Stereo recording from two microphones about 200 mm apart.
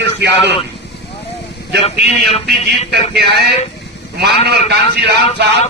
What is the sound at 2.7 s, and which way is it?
Speech, 55° right (ahead or behind).